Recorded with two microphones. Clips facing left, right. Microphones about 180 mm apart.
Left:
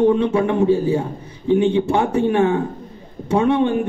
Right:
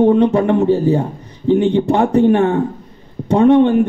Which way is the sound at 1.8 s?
60° right (ahead or behind).